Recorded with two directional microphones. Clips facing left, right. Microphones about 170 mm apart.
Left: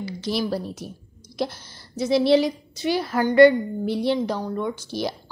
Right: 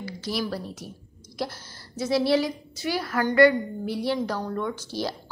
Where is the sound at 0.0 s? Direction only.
25° left (ahead or behind).